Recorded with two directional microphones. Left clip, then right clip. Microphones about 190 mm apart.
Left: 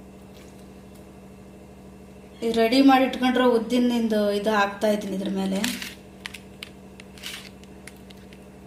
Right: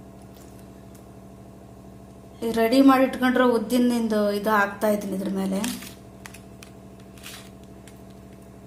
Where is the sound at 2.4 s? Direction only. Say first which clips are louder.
Even; 5° right (ahead or behind).